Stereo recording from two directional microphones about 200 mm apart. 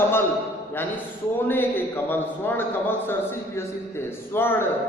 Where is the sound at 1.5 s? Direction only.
10° left (ahead or behind).